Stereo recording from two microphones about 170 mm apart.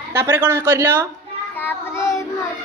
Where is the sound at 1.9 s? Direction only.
15° left (ahead or behind).